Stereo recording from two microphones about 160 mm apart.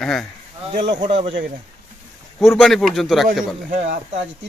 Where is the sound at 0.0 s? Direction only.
5° left (ahead or behind).